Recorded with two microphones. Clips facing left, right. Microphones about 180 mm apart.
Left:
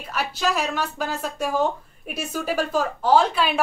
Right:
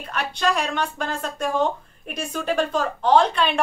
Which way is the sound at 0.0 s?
5° left (ahead or behind).